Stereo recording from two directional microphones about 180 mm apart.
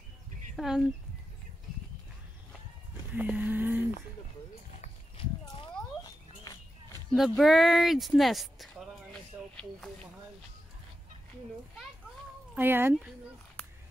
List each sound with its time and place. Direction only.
0.6 s speech: 5° right (ahead or behind)
3.2 s cattle: 10° right (ahead or behind)
5.4 s a sound: 20° left (ahead or behind)
7.1 s speech: centre (ahead or behind)
9.3 s a sound: 10° right (ahead or behind)
12.5 s cattle: 10° right (ahead or behind)